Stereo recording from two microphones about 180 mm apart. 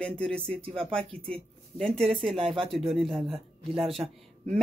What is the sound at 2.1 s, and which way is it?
Speech, 30° right (ahead or behind).